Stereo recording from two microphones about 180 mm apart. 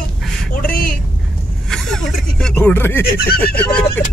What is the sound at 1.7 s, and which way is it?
Speech, 5° left (ahead or behind).